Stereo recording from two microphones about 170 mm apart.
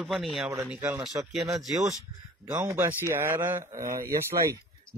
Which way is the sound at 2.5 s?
15° right (ahead or behind).